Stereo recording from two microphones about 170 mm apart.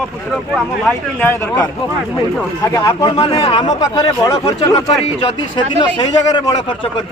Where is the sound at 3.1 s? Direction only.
35° left (ahead or behind).